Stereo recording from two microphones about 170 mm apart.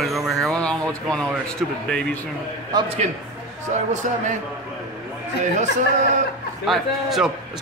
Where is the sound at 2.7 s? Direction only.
25° right (ahead or behind).